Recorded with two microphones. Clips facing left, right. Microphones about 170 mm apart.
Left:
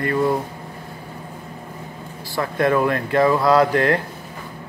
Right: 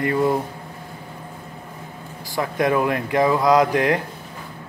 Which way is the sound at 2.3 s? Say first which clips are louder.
Left 1 dB; 15° right (ahead or behind).